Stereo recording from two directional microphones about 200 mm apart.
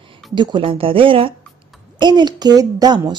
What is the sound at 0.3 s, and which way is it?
A woman's voice, 25° right (ahead or behind).